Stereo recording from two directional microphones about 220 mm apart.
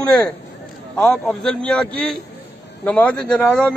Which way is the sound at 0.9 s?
5° left (ahead or behind).